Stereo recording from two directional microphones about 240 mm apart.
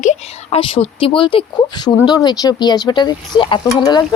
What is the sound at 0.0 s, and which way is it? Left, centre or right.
Speech, left.